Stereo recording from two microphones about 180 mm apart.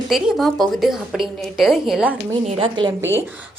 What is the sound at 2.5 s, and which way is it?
Speech, 30° right (ahead or behind).